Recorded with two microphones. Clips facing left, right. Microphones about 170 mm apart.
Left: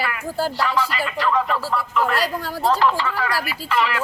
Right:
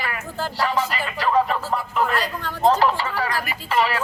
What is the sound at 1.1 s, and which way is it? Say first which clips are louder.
Speech: right 2 dB; 35° right (ahead or behind).